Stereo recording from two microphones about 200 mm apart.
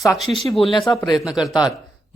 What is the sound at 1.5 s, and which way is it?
Speech, 20° left (ahead or behind).